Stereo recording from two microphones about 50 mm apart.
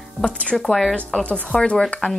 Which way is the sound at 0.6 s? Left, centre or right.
Centre.